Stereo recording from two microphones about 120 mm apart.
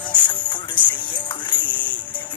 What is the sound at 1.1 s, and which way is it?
Music, 40° left (ahead or behind).